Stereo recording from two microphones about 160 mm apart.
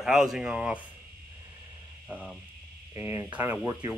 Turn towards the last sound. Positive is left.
turn(degrees=-10)  # may be behind; listen again after turning